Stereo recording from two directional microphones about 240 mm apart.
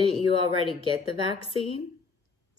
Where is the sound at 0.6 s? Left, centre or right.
Left.